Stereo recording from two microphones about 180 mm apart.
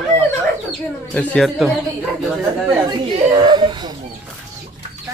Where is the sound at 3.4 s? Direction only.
25° right (ahead or behind).